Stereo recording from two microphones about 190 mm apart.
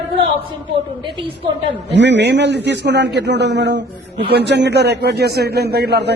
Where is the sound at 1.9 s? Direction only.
65° right (ahead or behind).